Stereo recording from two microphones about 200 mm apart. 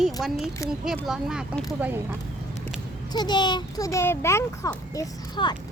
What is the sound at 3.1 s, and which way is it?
A child's voice, 20° left (ahead or behind).